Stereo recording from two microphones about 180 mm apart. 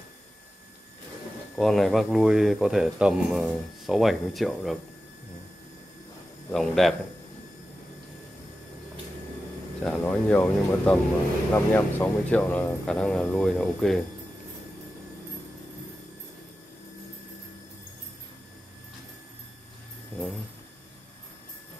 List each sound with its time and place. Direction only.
1.6 s speech: centre (ahead or behind)
6.5 s speech: centre (ahead or behind)
9.8 s speech: 5° left (ahead or behind)